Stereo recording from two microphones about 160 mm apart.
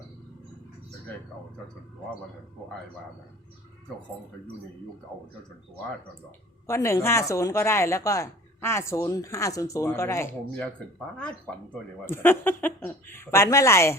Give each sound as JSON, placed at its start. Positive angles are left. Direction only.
{"t": 6.7, "sound": "speech", "side_deg": 20}
{"t": 12.0, "sound": "speech", "side_deg": 15}